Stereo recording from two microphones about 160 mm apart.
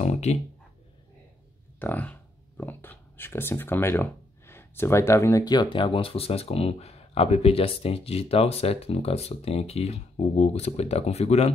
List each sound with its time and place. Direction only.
0.0 s speech: 45° left (ahead or behind)
1.8 s speech: 10° left (ahead or behind); by 11.5 s 40° left (ahead or behind)